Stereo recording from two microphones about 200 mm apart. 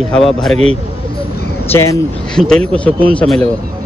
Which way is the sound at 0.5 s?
30° right (ahead or behind).